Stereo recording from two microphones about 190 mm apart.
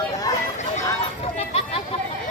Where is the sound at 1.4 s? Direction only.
30° left (ahead or behind).